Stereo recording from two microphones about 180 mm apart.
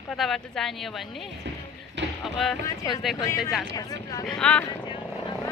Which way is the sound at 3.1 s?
20° left (ahead or behind).